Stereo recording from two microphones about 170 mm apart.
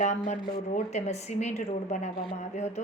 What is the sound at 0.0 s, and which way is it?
A woman's voice, 45° left (ahead or behind).